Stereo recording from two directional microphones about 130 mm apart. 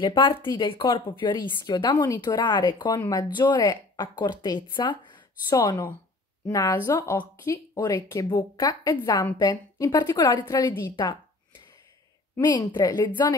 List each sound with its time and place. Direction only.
0.0 s a woman's voice: 35° left (ahead or behind)
12.4 s speech: 30° left (ahead or behind)